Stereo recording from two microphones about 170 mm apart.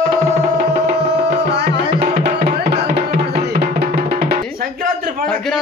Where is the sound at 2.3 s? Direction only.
70° right (ahead or behind).